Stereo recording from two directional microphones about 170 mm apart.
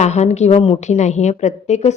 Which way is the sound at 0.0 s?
40° left (ahead or behind).